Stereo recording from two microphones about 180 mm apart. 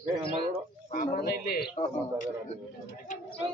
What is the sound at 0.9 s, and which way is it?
Speech, 50° left (ahead or behind).